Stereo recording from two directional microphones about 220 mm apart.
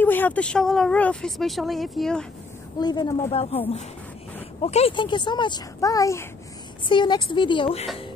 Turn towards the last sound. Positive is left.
turn(degrees=25)  # may be behind; listen again after turning